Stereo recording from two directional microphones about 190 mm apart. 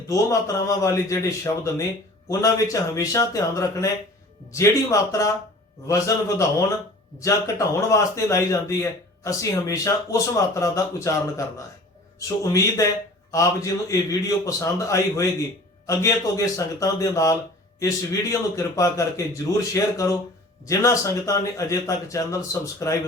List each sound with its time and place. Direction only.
0.1 s a man's voice: 15° left (ahead or behind)
13.9 s a man's voice: 15° left (ahead or behind)